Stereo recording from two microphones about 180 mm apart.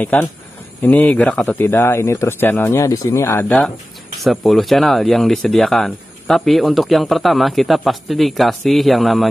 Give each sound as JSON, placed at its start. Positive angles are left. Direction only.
{"t": 0.0, "sound": "speech", "side_deg": 10}